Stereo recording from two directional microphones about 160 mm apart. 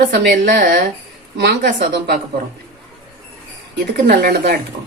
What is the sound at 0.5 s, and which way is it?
Speech, 60° right (ahead or behind).